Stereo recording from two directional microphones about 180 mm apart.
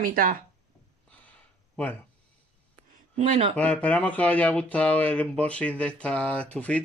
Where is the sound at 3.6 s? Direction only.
5° left (ahead or behind).